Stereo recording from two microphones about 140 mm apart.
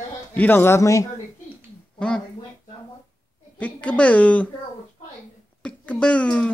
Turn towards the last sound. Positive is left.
turn(degrees=10)  # may be behind; listen again after turning